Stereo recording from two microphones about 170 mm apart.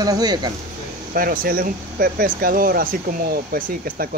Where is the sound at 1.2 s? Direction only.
55° right (ahead or behind).